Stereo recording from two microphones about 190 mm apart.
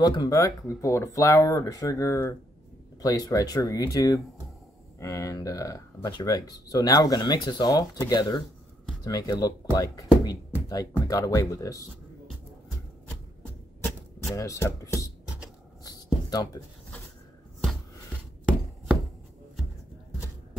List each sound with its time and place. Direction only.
0.0 s speech: 20° left (ahead or behind)
14.3 s speech: 15° left (ahead or behind)
15.8 s a sound: 20° left (ahead or behind)